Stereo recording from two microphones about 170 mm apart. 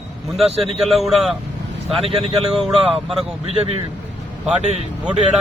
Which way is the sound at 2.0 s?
35° right (ahead or behind).